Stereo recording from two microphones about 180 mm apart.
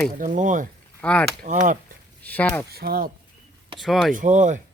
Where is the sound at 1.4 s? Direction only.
45° right (ahead or behind).